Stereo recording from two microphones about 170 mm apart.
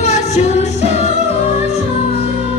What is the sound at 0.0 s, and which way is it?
Music, 40° left (ahead or behind).